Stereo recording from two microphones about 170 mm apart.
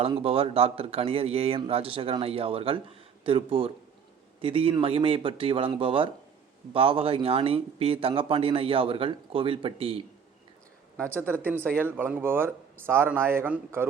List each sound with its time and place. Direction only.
0.2 s speech: 35° right (ahead or behind)
10.9 s speech: 15° right (ahead or behind)